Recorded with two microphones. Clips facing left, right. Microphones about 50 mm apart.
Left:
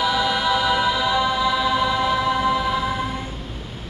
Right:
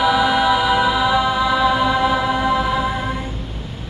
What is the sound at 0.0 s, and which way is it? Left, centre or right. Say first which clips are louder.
Music: right 5 dB; centre.